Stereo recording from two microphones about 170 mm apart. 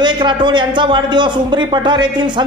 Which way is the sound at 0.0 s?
25° right (ahead or behind).